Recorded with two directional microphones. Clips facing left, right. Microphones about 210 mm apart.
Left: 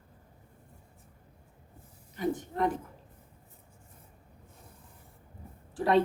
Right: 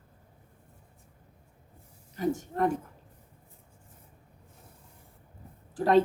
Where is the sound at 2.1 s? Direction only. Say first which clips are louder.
Right 2 dB; 45° right (ahead or behind).